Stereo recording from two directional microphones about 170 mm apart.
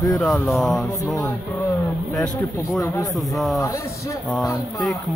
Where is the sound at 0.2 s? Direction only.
Centre (ahead or behind).